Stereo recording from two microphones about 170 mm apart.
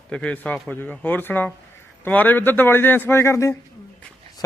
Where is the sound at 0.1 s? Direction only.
5° left (ahead or behind).